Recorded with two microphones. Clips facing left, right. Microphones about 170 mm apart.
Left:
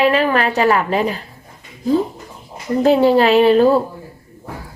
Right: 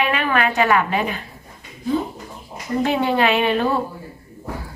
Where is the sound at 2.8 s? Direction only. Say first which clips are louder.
Left 8 dB; 35° left (ahead or behind).